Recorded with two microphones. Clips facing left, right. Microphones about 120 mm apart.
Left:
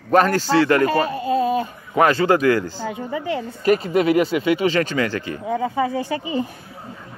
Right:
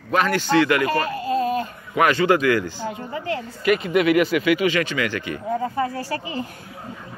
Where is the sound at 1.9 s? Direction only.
30° left (ahead or behind).